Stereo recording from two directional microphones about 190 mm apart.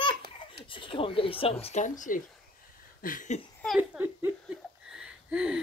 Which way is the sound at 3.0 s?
45° left (ahead or behind).